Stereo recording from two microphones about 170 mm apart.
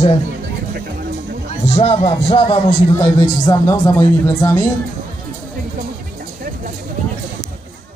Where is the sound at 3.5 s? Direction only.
15° left (ahead or behind).